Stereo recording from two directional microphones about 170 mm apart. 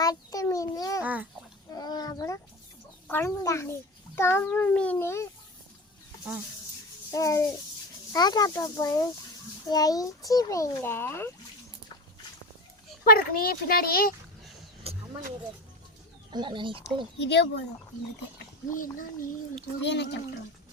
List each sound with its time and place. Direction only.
0.0 s a sound: 20° left (ahead or behind)
1.0 s a sound: 10° right (ahead or behind)
1.7 s a sound: 25° left (ahead or behind)
3.1 s a child's voice: 15° left (ahead or behind)
7.1 s a child's voice: 20° left (ahead or behind)
13.1 s a child's voice: 60° left (ahead or behind)
14.8 s vehicle: 35° right (ahead or behind)
16.3 s speech: 25° right (ahead or behind)
17.2 s speech: 90° left
18.7 s speech: 50° left (ahead or behind)
19.8 s speech: 90° left